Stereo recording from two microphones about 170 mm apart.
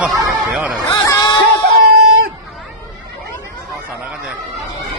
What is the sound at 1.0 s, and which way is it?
Music, 25° left (ahead or behind).